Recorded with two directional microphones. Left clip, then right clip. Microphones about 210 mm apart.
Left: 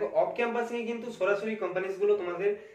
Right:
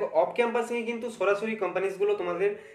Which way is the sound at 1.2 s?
50° right (ahead or behind).